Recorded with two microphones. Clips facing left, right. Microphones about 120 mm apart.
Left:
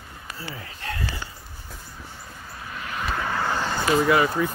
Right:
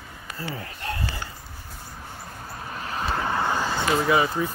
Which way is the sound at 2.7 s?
35° right (ahead or behind).